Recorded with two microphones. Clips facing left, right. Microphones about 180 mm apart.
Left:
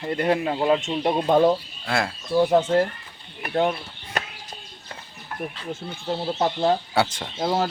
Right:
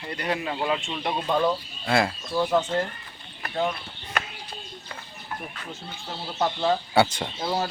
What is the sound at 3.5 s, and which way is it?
Speech, 50° left (ahead or behind).